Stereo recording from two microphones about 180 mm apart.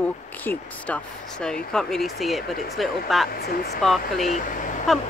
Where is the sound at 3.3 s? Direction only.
60° left (ahead or behind).